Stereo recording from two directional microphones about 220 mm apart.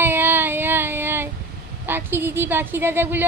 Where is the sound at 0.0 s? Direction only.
10° right (ahead or behind).